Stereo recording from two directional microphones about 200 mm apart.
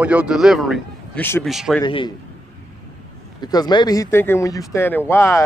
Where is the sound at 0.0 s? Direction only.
5° right (ahead or behind).